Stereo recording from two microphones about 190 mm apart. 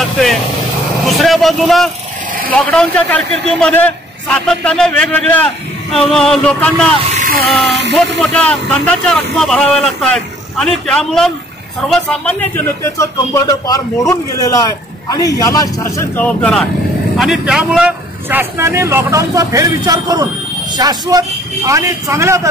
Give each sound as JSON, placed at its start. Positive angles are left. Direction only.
{"t": 1.0, "sound": "a man's voice", "side_deg": 0}
{"t": 7.2, "sound": "music", "side_deg": -50}
{"t": 7.6, "sound": "speech", "side_deg": -65}
{"t": 8.2, "sound": "a man's voice", "side_deg": 5}